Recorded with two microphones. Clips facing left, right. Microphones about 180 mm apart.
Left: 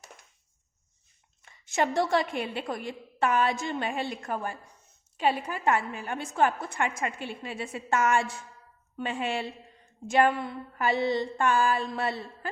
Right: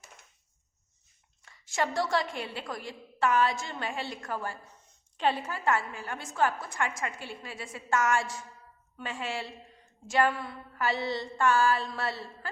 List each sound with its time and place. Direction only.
1.5 s a woman's voice: 20° left (ahead or behind)
9.0 s a woman's voice: 20° left (ahead or behind)